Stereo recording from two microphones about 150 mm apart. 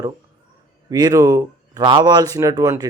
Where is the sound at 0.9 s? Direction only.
25° right (ahead or behind).